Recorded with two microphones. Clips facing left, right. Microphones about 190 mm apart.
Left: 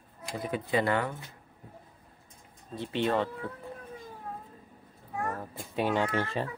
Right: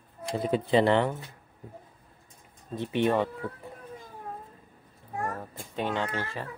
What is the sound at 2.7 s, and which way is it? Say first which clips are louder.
Speech: right 3 dB; 15° right (ahead or behind).